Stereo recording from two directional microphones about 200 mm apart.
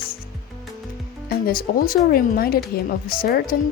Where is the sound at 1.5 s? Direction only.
45° left (ahead or behind).